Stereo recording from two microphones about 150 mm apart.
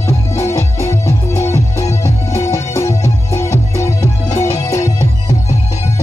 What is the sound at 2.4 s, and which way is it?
Music, 20° left (ahead or behind).